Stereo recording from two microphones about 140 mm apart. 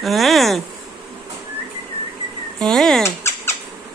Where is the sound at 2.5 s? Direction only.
5° left (ahead or behind).